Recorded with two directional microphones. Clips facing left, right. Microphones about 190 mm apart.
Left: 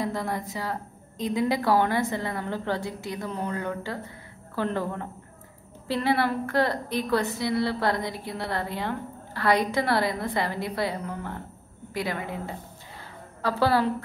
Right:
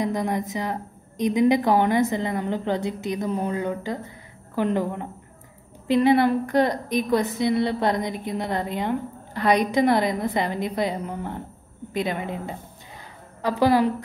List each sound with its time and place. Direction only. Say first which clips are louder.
0.0 s a woman's voice: right 5 dB; 15° right (ahead or behind)